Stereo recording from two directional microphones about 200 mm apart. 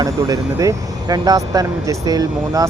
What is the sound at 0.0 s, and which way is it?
Speech, 15° right (ahead or behind).